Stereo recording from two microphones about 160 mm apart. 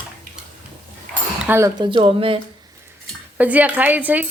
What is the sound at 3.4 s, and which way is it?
Speech, 10° right (ahead or behind).